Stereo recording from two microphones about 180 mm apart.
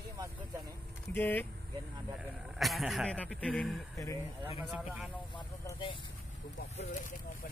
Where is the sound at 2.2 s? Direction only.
Centre (ahead or behind).